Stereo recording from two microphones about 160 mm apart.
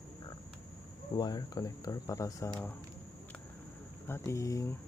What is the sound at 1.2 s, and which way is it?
Speech, 25° left (ahead or behind).